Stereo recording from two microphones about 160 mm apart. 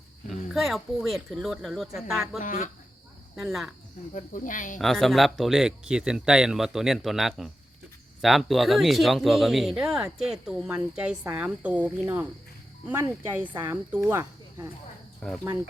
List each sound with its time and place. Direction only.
0.3 s speech: centre (ahead or behind)
2.4 s speech: 55° left (ahead or behind)
3.3 s speech: centre (ahead or behind)
4.1 s speech: 55° left (ahead or behind)
4.8 s speech: centre (ahead or behind); by 14.7 s 15° right (ahead or behind)
15.2 s speech: 5° left (ahead or behind)